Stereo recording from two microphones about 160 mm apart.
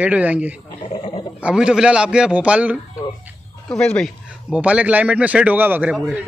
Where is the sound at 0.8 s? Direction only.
30° left (ahead or behind).